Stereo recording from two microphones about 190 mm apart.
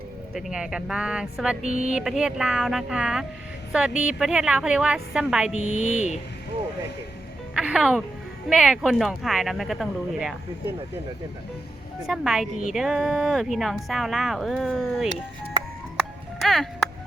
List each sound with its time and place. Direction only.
0.3 s speech: centre (ahead or behind)
1.6 s speech: 40° left (ahead or behind)
1.9 s a woman's voice: centre (ahead or behind)
5.5 s speech: 90° left
5.9 s speech: 35° left (ahead or behind)
7.5 s music: 5° right (ahead or behind)
8.4 s speech: 5° right (ahead or behind)
12.0 s speech: 5° right (ahead or behind)
16.4 s music: centre (ahead or behind)